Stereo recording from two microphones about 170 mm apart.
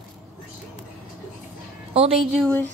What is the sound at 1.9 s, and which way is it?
Speech, 35° right (ahead or behind).